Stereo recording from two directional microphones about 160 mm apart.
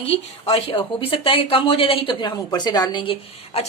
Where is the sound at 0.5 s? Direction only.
30° left (ahead or behind).